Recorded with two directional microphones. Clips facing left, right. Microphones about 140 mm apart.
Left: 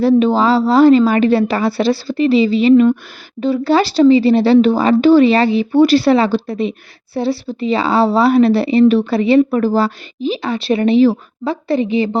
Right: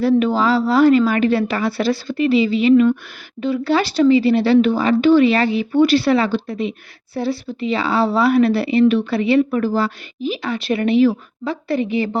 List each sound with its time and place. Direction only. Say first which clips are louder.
0.0 s a woman's voice: left 4 dB; 30° left (ahead or behind)